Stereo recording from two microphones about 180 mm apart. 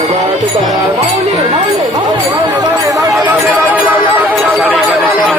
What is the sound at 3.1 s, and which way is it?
Music, centre (ahead or behind).